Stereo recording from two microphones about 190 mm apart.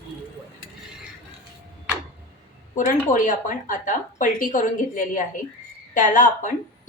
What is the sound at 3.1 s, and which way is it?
A woman's voice, 45° left (ahead or behind).